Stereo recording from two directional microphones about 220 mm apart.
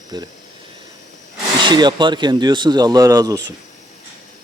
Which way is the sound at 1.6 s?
20° right (ahead or behind).